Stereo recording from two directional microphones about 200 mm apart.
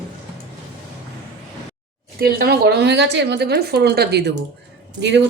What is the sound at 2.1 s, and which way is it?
A woman's voice, 50° right (ahead or behind).